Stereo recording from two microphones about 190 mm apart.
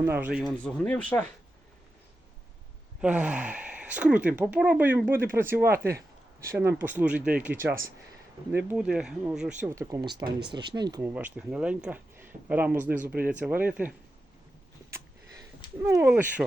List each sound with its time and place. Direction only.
0.0 s speech: 10° right (ahead or behind)
0.6 s speech: 5° left (ahead or behind)
3.0 s speech: 5° right (ahead or behind)
11.0 s speech: 10° right (ahead or behind)
14.8 s a sound: 15° right (ahead or behind)